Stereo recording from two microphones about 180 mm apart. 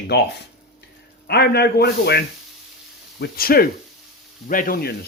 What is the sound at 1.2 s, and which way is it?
Speech, 65° left (ahead or behind).